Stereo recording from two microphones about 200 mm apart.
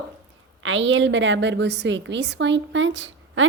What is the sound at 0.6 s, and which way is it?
A woman's voice, 70° right (ahead or behind).